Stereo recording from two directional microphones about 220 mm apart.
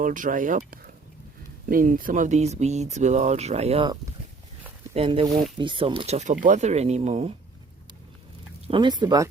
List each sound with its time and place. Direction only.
0.0 s speech: 35° right (ahead or behind)
4.9 s speech: 25° right (ahead or behind)
8.6 s speech: 20° right (ahead or behind)